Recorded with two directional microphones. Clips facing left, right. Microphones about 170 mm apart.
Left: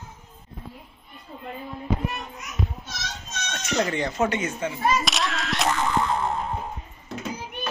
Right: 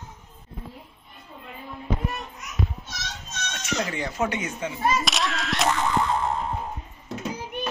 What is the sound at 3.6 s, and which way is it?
Speech, 5° right (ahead or behind).